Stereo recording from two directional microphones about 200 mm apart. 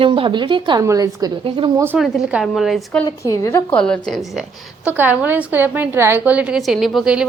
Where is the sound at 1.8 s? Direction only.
10° right (ahead or behind).